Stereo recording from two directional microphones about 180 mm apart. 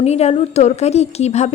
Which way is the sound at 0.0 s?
35° left (ahead or behind).